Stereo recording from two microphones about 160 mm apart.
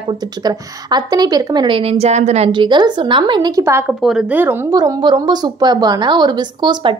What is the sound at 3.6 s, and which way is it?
Speech, 15° right (ahead or behind).